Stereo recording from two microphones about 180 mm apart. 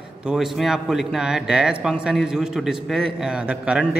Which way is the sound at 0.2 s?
5° right (ahead or behind).